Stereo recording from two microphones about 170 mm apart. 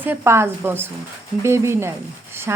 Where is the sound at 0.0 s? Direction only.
15° right (ahead or behind).